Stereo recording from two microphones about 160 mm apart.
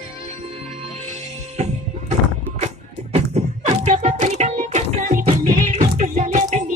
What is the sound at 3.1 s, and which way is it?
Music, 40° right (ahead or behind).